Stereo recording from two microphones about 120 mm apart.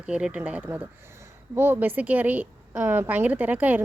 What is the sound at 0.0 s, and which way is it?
A woman's voice, 10° right (ahead or behind).